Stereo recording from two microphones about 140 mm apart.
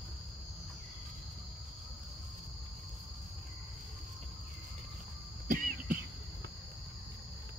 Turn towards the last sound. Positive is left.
turn(degrees=-80)